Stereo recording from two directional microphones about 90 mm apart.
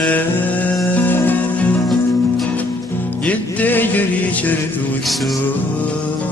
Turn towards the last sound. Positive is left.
turn(degrees=20)  # may be behind; listen again after turning